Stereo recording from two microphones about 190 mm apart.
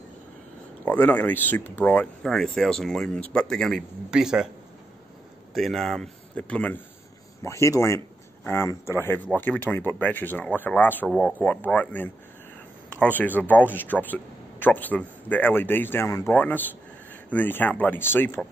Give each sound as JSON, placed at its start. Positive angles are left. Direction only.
{"t": 0.8, "sound": "speech", "side_deg": 10}
{"t": 5.5, "sound": "a man's voice", "side_deg": 0}
{"t": 13.4, "sound": "speech", "side_deg": 10}